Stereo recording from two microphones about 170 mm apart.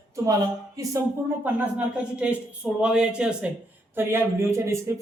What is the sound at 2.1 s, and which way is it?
Speech, 5° right (ahead or behind).